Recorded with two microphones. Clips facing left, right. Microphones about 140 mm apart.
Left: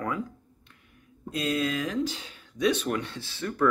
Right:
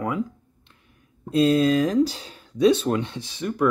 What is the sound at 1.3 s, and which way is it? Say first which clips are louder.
Speech: right 10 dB; 30° right (ahead or behind).